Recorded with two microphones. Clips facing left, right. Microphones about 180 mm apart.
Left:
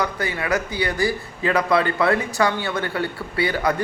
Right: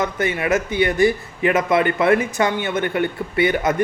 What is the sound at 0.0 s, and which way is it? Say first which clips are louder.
Speech: right 4 dB; 20° right (ahead or behind).